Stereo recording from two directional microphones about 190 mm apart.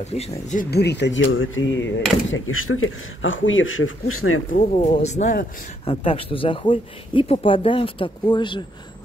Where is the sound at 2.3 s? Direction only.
90° left.